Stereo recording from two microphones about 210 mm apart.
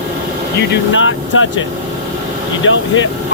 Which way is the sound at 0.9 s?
65° left (ahead or behind).